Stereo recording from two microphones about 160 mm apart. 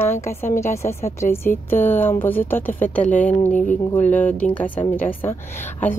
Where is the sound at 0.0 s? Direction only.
15° left (ahead or behind).